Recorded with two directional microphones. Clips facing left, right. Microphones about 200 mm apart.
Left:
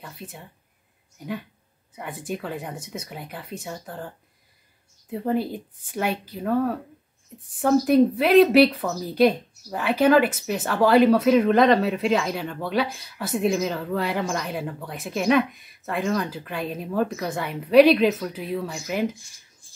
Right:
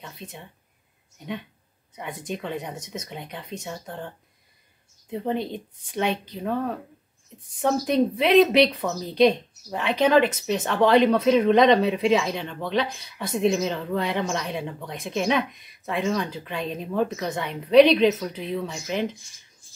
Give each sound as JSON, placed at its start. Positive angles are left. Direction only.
{"t": 0.0, "sound": "a woman's voice", "side_deg": 5}
{"t": 2.0, "sound": "a woman's voice", "side_deg": 5}
{"t": 5.1, "sound": "a woman's voice", "side_deg": 5}